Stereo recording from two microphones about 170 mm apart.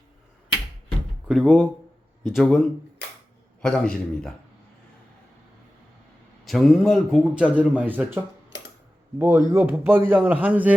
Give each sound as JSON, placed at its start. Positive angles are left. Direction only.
{"t": 1.3, "sound": "a man's voice", "side_deg": 0}
{"t": 6.4, "sound": "a man's voice", "side_deg": 0}